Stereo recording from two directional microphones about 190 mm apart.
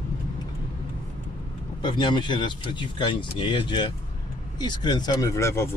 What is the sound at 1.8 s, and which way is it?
Speech, 25° left (ahead or behind).